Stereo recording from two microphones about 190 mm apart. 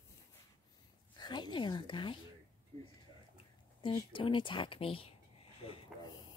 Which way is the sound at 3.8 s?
25° left (ahead or behind).